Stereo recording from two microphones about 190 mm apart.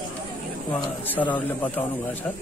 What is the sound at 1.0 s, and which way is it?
Speech, 10° left (ahead or behind).